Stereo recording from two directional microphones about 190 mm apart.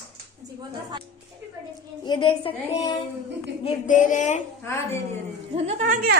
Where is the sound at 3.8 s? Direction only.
45° left (ahead or behind).